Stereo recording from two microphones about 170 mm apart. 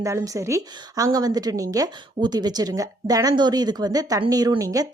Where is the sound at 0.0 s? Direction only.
15° right (ahead or behind).